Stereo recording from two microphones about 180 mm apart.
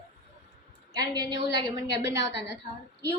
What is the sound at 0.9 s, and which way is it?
Speech, 20° right (ahead or behind).